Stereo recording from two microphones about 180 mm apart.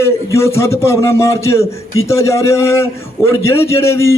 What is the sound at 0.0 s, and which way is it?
A man's voice, 15° left (ahead or behind).